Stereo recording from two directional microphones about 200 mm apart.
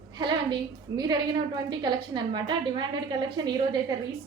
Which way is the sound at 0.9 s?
20° right (ahead or behind).